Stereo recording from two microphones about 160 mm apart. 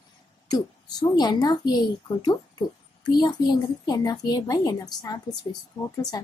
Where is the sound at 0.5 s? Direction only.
25° left (ahead or behind).